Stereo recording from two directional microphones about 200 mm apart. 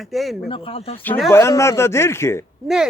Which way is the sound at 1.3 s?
15° left (ahead or behind).